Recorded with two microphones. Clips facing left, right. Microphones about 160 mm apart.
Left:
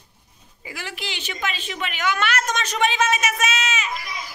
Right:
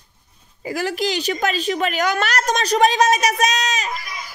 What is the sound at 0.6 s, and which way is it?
A woman's voice, 40° right (ahead or behind).